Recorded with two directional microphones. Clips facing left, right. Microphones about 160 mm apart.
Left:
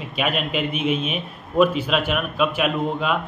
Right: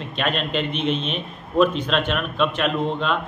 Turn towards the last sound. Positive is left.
turn(degrees=5)  # may be behind; listen again after turning